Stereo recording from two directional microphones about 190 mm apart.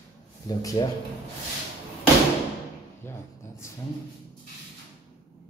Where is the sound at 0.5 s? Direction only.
20° left (ahead or behind).